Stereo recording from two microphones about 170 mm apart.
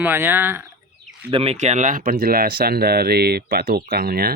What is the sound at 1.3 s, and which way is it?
Speech, 35° right (ahead or behind).